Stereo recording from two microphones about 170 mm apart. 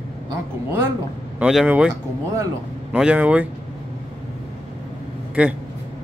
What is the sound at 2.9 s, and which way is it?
Speech, 5° right (ahead or behind).